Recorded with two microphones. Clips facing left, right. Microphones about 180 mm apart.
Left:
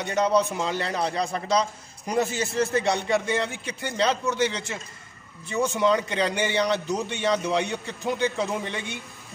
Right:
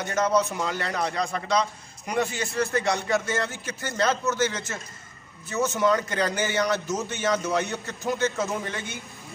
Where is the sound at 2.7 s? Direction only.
20° left (ahead or behind).